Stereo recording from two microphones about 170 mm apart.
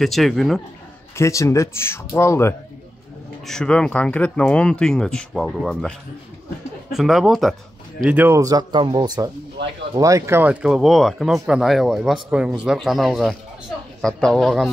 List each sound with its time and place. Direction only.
0.0 s speech: centre (ahead or behind)
1.1 s speech: 15° left (ahead or behind)
3.4 s speech: 5° left (ahead or behind); by 9.3 s 25° right (ahead or behind)
9.6 s speech: 90° right
9.9 s speech: 20° right (ahead or behind); by 14.7 s centre (ahead or behind)